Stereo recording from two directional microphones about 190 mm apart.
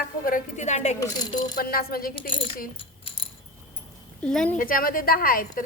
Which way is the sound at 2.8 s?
30° left (ahead or behind).